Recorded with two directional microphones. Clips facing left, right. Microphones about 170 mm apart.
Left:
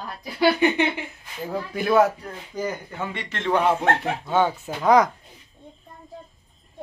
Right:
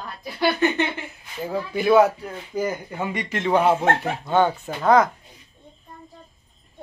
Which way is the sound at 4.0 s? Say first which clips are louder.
Right 2 dB; 5° left (ahead or behind).